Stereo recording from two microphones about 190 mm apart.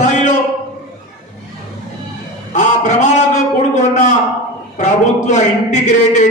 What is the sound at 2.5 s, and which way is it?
Speech, 40° left (ahead or behind).